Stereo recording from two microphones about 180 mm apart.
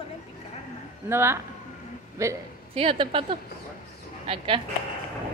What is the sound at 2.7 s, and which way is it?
A woman's voice, 30° right (ahead or behind).